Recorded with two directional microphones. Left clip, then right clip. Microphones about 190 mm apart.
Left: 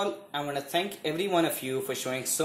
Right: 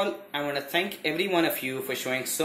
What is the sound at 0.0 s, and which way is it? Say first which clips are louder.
Speech: right 2 dB; 20° left (ahead or behind).